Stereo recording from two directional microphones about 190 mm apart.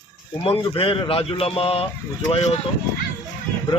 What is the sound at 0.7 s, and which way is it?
Speech, 30° left (ahead or behind).